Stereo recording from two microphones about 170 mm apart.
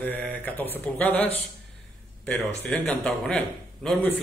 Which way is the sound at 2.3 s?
10° left (ahead or behind).